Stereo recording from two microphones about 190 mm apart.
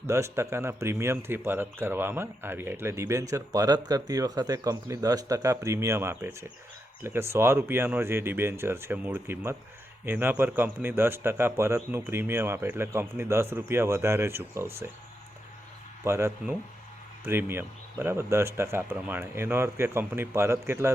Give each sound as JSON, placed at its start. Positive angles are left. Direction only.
{"t": 0.1, "sound": "a man's voice", "side_deg": -15}
{"t": 16.0, "sound": "a man's voice", "side_deg": -15}